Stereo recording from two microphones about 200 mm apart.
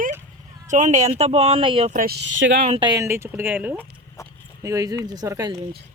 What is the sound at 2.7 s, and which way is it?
Speech, 20° right (ahead or behind).